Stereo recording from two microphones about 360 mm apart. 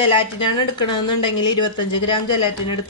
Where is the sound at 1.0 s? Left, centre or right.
Left.